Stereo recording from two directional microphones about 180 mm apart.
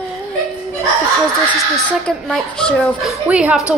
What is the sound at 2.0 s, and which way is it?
A woman's voice, 5° left (ahead or behind).